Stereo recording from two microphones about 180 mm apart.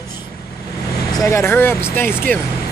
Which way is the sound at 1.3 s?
15° left (ahead or behind).